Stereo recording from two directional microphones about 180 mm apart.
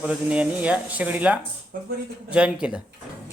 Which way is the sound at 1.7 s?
50° right (ahead or behind).